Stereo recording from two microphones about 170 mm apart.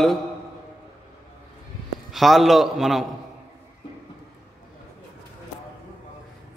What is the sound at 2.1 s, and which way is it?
Speech, centre (ahead or behind).